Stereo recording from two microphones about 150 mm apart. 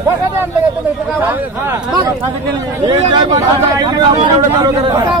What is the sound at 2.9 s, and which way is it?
Speech, 25° right (ahead or behind).